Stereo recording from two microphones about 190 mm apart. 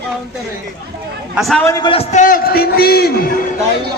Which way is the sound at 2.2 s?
50° left (ahead or behind).